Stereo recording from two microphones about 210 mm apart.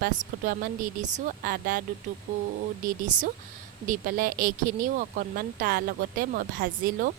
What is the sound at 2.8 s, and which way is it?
Speech, 35° right (ahead or behind).